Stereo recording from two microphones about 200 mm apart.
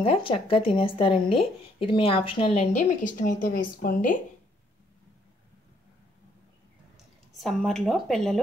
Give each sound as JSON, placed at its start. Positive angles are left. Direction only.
{"t": 0.0, "sound": "speech", "side_deg": 25}
{"t": 2.7, "sound": "a woman's voice", "side_deg": 40}
{"t": 7.3, "sound": "a woman's voice", "side_deg": 0}